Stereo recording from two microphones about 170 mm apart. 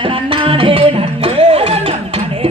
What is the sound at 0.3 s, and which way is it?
Music, 30° right (ahead or behind).